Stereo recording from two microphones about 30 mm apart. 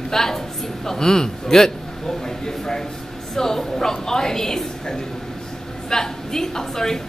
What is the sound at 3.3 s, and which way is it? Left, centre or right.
A woman's voice, centre.